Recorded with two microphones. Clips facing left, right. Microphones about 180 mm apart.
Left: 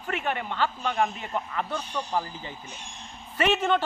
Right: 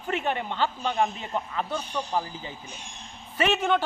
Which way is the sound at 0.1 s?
25° right (ahead or behind).